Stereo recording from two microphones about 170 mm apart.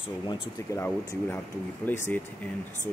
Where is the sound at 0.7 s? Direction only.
15° left (ahead or behind).